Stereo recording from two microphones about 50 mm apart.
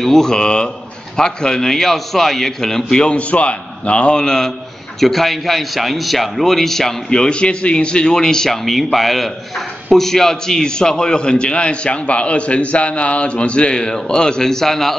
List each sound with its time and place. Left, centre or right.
0.0 s a man's voice: centre
3.2 s a man's voice: left
5.0 s a man's voice: centre